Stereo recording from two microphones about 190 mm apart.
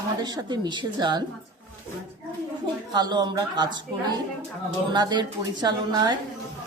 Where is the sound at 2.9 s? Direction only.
20° right (ahead or behind).